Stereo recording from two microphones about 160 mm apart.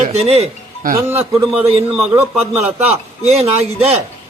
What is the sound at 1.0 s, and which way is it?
Speech, 15° right (ahead or behind).